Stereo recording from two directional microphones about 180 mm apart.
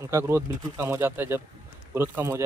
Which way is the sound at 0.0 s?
15° right (ahead or behind).